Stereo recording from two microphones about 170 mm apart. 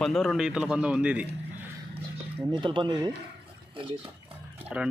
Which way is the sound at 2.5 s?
30° right (ahead or behind).